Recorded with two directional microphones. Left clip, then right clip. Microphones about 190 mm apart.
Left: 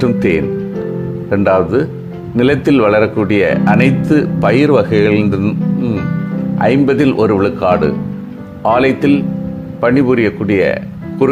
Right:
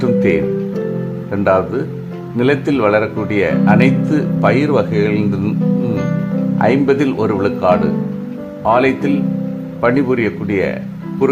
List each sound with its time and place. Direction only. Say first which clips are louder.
0.0 s speech: even; 20° left (ahead or behind)
5.4 s speech: left 1 dB; 5° left (ahead or behind)
6.6 s speech: left 2 dB; 20° left (ahead or behind)